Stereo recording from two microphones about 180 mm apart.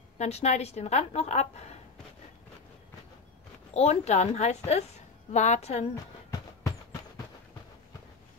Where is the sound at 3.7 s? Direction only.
35° left (ahead or behind).